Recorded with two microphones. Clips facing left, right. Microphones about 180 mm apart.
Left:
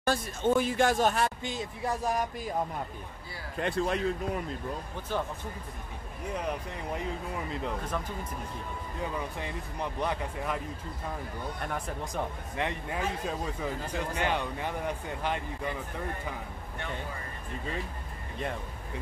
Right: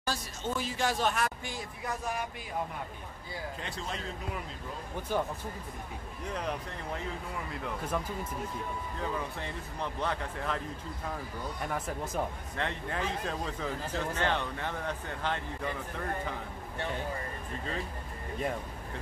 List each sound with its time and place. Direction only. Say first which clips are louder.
0.0 s speech: left 8 dB; 55° left (ahead or behind)
1.1 s speech: left 3 dB; 25° left (ahead or behind)
1.9 s speech: left 5 dB; 40° left (ahead or behind)
3.5 s speech: left 10 dB; 60° left (ahead or behind)
5.1 s speech: right 1 dB; 10° right (ahead or behind)
9.4 s speech: left 2 dB; 15° left (ahead or behind)
11.6 s speech: right 2 dB; 5° right (ahead or behind)
12.5 s speech: left 2 dB; 10° left (ahead or behind)